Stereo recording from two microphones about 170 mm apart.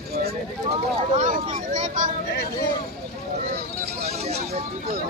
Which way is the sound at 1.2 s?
50° right (ahead or behind).